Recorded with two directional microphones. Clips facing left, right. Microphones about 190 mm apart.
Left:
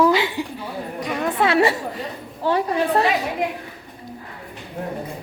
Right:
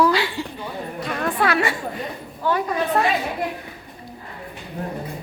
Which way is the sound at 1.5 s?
30° left (ahead or behind).